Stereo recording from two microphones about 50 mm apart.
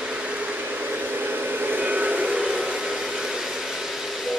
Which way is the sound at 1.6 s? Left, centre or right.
Right.